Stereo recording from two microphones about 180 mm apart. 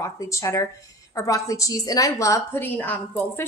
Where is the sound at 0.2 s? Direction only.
15° left (ahead or behind).